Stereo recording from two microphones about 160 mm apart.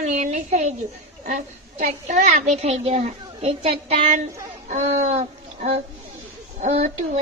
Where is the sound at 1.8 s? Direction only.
50° right (ahead or behind).